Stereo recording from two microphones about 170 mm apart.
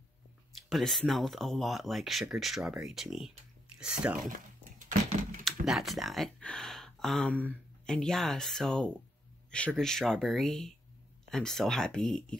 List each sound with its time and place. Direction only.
0.7 s speech: centre (ahead or behind)
4.3 s a sound: 50° right (ahead or behind)
5.4 s speech: centre (ahead or behind)